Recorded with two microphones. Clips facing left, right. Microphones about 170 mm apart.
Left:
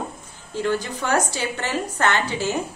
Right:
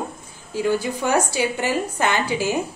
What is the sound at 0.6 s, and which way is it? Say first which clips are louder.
A woman's voice: right 2 dB; 10° right (ahead or behind).